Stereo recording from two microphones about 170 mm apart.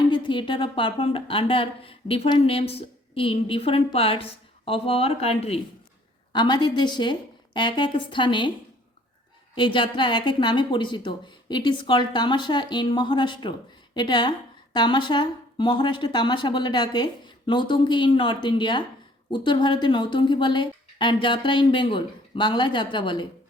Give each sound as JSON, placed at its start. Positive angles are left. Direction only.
{"t": 0.1, "sound": "a woman's voice", "side_deg": 30}
{"t": 6.3, "sound": "a woman's voice", "side_deg": 25}
{"t": 9.6, "sound": "a woman's voice", "side_deg": 30}